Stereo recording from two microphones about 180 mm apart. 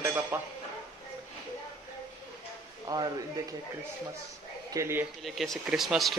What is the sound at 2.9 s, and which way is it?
Speech, 20° right (ahead or behind).